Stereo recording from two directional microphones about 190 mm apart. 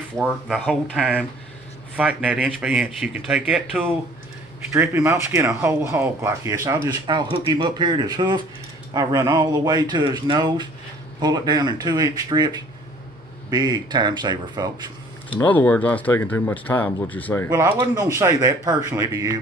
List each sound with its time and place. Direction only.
0.2 s speech: centre (ahead or behind)
2.0 s speech: 5° right (ahead or behind); by 14.9 s 25° right (ahead or behind)
15.3 s speech: 10° left (ahead or behind)
17.5 s speech: 20° right (ahead or behind)